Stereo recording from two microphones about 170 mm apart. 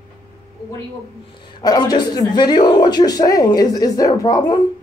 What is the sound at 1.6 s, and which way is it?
A man's voice, 25° left (ahead or behind).